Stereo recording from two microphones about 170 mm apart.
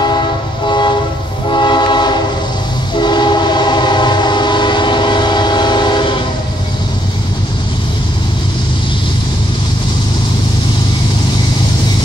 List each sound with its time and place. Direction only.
0.7 s train: 25° left (ahead or behind)